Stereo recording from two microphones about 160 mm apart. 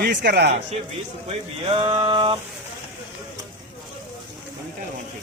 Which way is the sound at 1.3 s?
35° right (ahead or behind).